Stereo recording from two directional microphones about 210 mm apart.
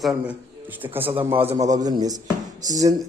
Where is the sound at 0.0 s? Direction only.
5° right (ahead or behind).